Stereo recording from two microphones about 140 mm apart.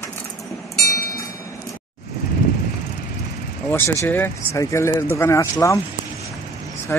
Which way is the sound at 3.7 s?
15° left (ahead or behind).